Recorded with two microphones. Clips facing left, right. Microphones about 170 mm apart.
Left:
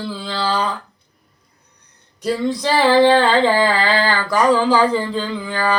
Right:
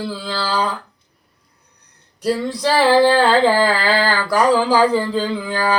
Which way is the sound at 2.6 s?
5° right (ahead or behind).